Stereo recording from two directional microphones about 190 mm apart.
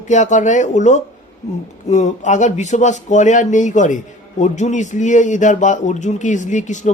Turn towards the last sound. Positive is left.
turn(degrees=40)  # may be behind; listen again after turning